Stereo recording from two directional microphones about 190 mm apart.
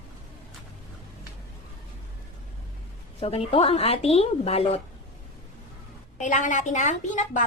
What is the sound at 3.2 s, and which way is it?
A woman's voice, 30° left (ahead or behind).